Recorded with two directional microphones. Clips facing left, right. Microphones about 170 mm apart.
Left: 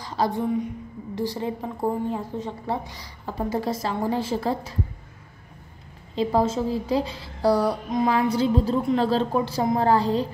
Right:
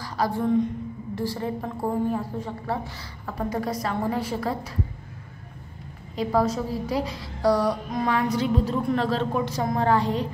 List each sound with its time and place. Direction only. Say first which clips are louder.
0.0 s a sound: left 1 dB; 20° left (ahead or behind)
1.1 s a woman's voice: left 1 dB; 20° left (ahead or behind)
6.1 s a woman's voice: left 1 dB; 25° left (ahead or behind)